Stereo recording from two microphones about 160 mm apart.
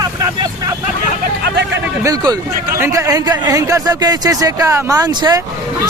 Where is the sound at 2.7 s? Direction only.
20° right (ahead or behind).